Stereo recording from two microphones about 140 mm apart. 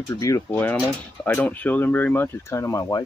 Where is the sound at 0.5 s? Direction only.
10° left (ahead or behind).